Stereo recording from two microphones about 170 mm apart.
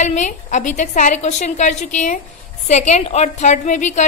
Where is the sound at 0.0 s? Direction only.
45° left (ahead or behind).